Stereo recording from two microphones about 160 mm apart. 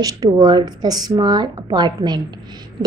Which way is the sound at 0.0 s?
25° right (ahead or behind).